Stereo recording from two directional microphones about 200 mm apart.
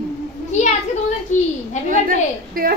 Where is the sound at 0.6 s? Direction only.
35° left (ahead or behind).